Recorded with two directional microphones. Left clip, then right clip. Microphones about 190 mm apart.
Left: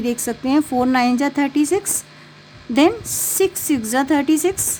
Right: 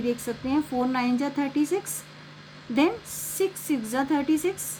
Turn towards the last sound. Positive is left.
turn(degrees=55)  # may be behind; listen again after turning